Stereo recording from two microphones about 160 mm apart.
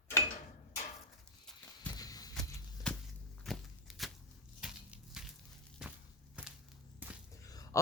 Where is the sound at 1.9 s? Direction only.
25° left (ahead or behind).